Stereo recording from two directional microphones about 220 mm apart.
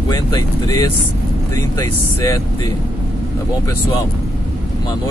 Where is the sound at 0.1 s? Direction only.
15° left (ahead or behind).